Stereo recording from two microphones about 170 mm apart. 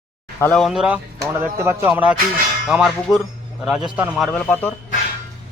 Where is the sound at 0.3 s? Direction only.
5° left (ahead or behind).